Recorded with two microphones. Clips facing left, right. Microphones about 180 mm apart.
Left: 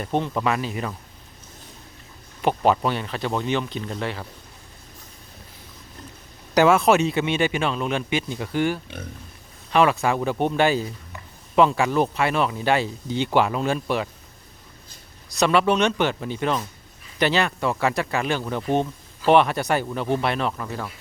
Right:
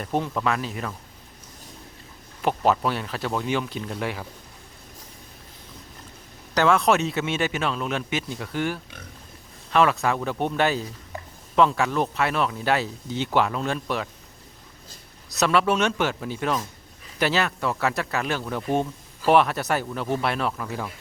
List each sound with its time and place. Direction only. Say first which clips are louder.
0.0 s a man's voice: left 2 dB; 5° right (ahead or behind)
2.4 s a man's voice: left 2 dB; centre (ahead or behind)
6.5 s a man's voice: left 3 dB; 10° left (ahead or behind)
15.4 s a man's voice: left 2 dB; centre (ahead or behind)